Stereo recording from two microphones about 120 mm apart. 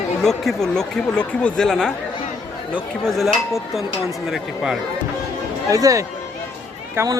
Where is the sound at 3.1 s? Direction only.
Centre (ahead or behind).